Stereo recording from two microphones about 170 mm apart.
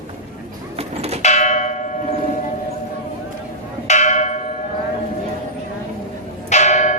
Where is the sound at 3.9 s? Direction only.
45° left (ahead or behind).